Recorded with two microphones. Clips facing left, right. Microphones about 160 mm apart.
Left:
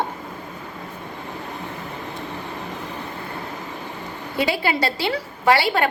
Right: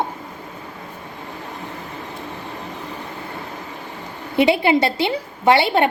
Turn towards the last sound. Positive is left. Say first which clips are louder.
# right 3 dB
turn(degrees=-25)  # may be behind; listen again after turning